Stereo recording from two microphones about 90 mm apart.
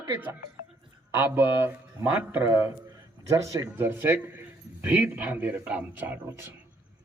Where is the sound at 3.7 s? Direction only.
25° right (ahead or behind).